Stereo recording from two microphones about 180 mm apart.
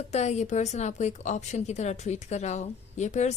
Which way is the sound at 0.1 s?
40° left (ahead or behind).